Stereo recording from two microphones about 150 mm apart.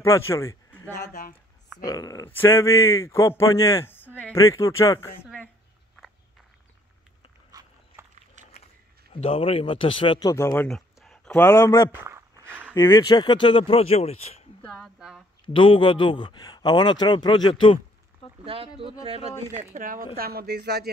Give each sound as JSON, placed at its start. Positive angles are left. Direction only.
{"t": 0.0, "sound": "speech", "side_deg": 20}
{"t": 1.8, "sound": "speech", "side_deg": 25}
{"t": 8.4, "sound": "a sound", "side_deg": -55}
{"t": 9.1, "sound": "speech", "side_deg": 40}
{"t": 10.5, "sound": "a sound", "side_deg": 5}
{"t": 11.4, "sound": "speech", "side_deg": 20}
{"t": 12.0, "sound": "a sound", "side_deg": -15}
{"t": 12.7, "sound": "speech", "side_deg": 20}
{"t": 14.6, "sound": "speech", "side_deg": 5}
{"t": 15.4, "sound": "speech", "side_deg": 35}
{"t": 18.4, "sound": "speech", "side_deg": -35}
{"t": 19.7, "sound": "speech", "side_deg": -65}
{"t": 20.2, "sound": "speech", "side_deg": -90}